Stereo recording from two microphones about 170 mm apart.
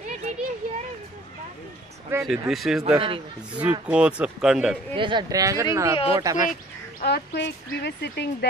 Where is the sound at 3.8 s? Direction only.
5° right (ahead or behind).